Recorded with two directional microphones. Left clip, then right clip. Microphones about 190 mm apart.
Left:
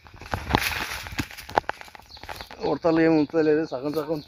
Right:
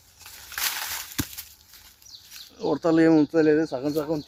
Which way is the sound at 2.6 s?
Centre (ahead or behind).